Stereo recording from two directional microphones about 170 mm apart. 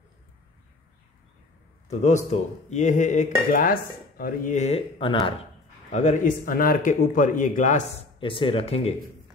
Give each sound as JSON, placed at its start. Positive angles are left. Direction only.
{"t": 1.9, "sound": "speech", "side_deg": 40}
{"t": 5.9, "sound": "speech", "side_deg": 45}
{"t": 6.4, "sound": "speech", "side_deg": 55}
{"t": 8.2, "sound": "speech", "side_deg": 30}